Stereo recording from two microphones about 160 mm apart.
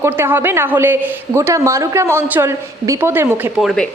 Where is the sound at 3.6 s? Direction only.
Centre (ahead or behind).